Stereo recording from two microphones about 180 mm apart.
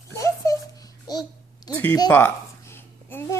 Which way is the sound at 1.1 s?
20° left (ahead or behind).